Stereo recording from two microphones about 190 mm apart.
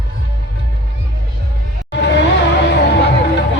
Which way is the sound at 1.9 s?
65° left (ahead or behind).